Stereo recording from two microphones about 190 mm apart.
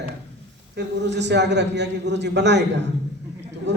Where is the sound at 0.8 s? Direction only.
65° right (ahead or behind).